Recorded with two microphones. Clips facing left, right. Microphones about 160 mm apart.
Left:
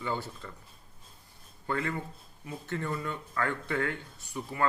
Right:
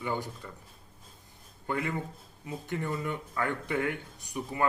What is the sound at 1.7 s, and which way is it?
Speech, 15° right (ahead or behind).